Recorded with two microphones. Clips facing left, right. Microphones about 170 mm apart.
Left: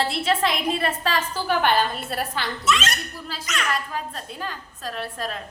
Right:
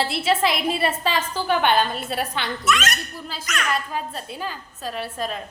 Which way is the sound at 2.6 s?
30° left (ahead or behind).